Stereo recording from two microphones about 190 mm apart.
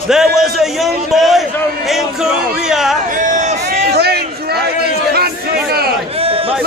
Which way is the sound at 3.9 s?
55° right (ahead or behind).